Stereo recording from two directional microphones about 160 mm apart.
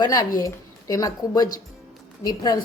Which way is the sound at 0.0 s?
25° left (ahead or behind).